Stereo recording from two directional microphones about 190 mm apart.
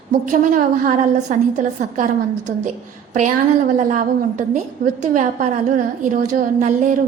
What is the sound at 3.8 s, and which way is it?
A woman's voice, 40° right (ahead or behind).